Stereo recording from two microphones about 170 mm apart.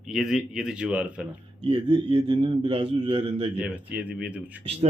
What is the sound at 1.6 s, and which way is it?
Speech, 30° right (ahead or behind).